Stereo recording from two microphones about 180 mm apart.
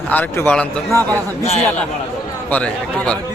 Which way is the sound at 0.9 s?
15° right (ahead or behind).